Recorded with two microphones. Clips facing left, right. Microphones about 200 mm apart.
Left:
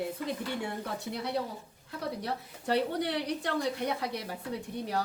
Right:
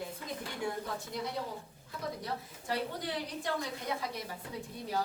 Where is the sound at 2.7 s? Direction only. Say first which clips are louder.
Left 7 dB; 70° left (ahead or behind).